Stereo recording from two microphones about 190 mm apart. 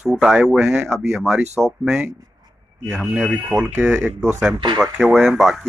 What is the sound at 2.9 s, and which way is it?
Speech, centre (ahead or behind).